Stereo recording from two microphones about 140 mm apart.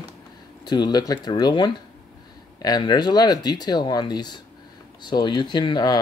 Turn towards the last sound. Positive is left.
turn(degrees=30)  # may be behind; listen again after turning